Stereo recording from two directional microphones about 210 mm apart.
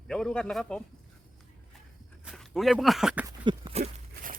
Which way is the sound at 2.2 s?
Centre (ahead or behind).